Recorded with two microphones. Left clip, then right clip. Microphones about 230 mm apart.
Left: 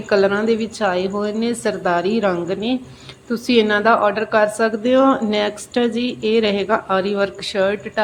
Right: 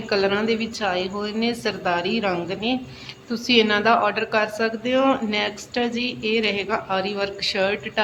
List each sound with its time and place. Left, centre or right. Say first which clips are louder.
0.1 s a woman's voice: left 5 dB; left